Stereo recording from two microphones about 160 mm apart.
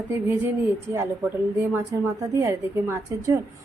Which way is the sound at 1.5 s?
15° right (ahead or behind).